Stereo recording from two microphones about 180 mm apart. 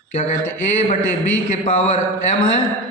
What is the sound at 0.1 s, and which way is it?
Speech, 45° left (ahead or behind).